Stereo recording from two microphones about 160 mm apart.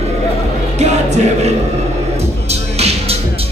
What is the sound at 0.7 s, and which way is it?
Music, 45° right (ahead or behind).